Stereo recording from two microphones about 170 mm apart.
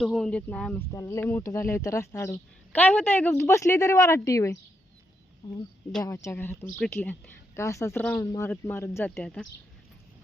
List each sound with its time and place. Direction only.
0.0 s speech: centre (ahead or behind); by 5.6 s 25° left (ahead or behind)
6.2 s speech: 15° left (ahead or behind)